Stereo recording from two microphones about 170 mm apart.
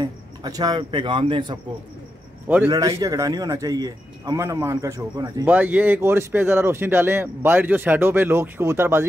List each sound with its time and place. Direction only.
0.0 s speech: 20° right (ahead or behind)
2.4 s a man's voice: 10° right (ahead or behind)
3.0 s speech: 20° right (ahead or behind)
5.5 s speech: 10° right (ahead or behind)